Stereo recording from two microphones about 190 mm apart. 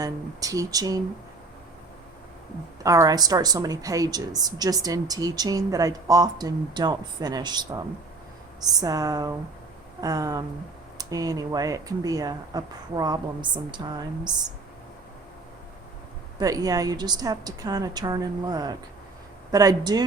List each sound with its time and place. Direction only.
0.0 s speech: 20° right (ahead or behind)
2.8 s speech: 15° right (ahead or behind)
16.4 s speech: 20° right (ahead or behind)